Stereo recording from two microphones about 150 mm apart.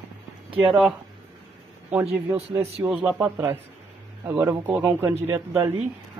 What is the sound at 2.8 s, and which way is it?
Speech, 10° right (ahead or behind).